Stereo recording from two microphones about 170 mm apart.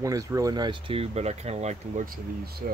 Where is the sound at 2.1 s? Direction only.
65° right (ahead or behind).